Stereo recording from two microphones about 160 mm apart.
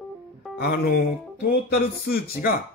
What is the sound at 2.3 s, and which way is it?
Speech, 75° left (ahead or behind).